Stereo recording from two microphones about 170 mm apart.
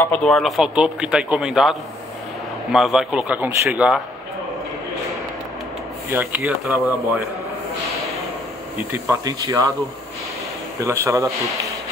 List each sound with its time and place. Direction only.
0.0 s speech: 5° left (ahead or behind)
6.0 s speech: 10° right (ahead or behind)
8.9 s speech: 15° right (ahead or behind)
10.8 s speech: 15° right (ahead or behind)